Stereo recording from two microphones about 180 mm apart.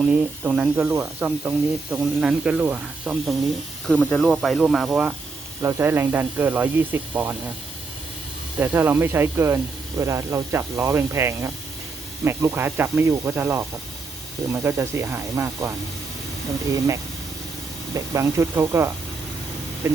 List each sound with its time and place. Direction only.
0.0 s speech: 5° right (ahead or behind)
3.8 s speech: 5° left (ahead or behind); by 7.3 s 10° right (ahead or behind)
8.5 s speech: 10° right (ahead or behind)
16.7 s speech: 15° right (ahead or behind)